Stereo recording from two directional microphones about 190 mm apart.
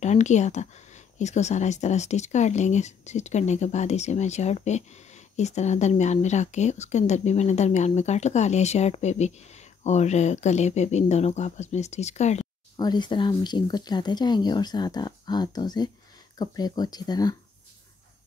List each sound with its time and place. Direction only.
0.0 s speech: 40° left (ahead or behind)
12.7 s speech: 20° left (ahead or behind)